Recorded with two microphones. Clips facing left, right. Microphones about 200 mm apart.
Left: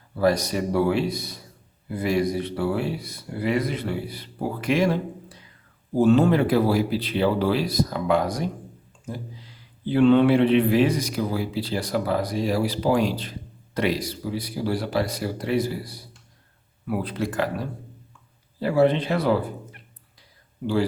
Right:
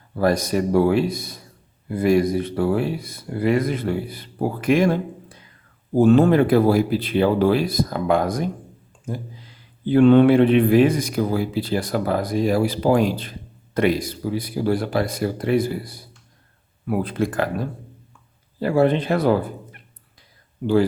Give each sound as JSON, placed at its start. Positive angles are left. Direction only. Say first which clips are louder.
{"t": 0.2, "sound": "speech", "louder": "right 2 dB", "side_deg": -50}
{"t": 9.9, "sound": "speech", "louder": "right 4 dB", "side_deg": -50}